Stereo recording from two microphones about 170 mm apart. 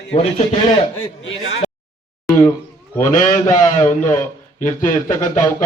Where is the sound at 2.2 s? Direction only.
15° left (ahead or behind).